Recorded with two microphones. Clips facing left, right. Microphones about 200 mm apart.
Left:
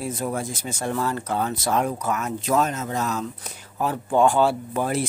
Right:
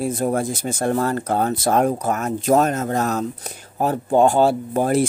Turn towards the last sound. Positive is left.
turn(degrees=-45)  # may be behind; listen again after turning